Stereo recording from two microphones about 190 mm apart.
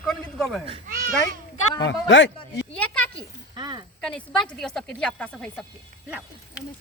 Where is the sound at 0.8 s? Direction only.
45° right (ahead or behind).